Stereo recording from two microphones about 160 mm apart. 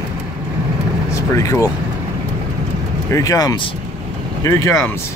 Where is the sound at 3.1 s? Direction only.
20° left (ahead or behind).